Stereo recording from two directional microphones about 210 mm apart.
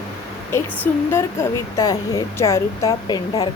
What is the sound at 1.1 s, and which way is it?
A woman's voice, 15° left (ahead or behind).